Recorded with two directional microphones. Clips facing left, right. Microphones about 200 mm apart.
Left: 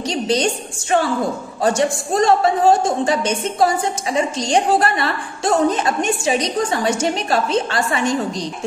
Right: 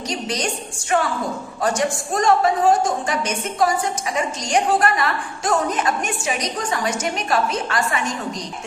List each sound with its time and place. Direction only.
0.1 s a woman's voice: 30° left (ahead or behind)
1.6 s a woman's voice: 30° left (ahead or behind)